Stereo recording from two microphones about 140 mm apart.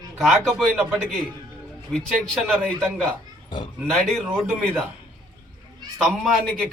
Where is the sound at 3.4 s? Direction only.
35° left (ahead or behind).